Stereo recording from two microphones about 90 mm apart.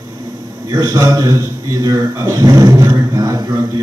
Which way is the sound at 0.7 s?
40° right (ahead or behind).